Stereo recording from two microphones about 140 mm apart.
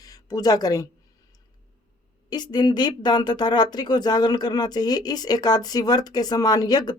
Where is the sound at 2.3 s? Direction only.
30° left (ahead or behind).